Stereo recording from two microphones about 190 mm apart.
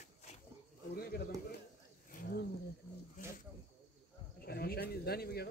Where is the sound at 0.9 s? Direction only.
55° left (ahead or behind).